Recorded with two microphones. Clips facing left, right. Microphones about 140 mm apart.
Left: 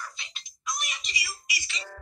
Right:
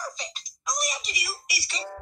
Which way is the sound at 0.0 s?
40° right (ahead or behind).